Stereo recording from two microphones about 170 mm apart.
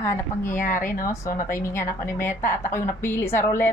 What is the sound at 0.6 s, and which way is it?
Speech, 50° left (ahead or behind).